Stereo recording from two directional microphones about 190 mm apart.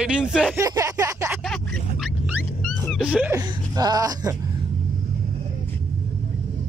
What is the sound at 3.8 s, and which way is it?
Speech, 20° right (ahead or behind).